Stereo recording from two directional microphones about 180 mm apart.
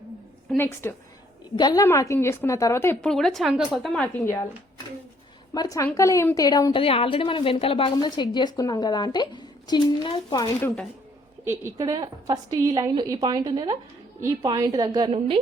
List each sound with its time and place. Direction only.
0.5 s a woman's voice: 15° left (ahead or behind)
5.5 s speech: 20° left (ahead or behind)
6.8 s speech: 30° left (ahead or behind)
11.4 s a woman's voice: 15° right (ahead or behind)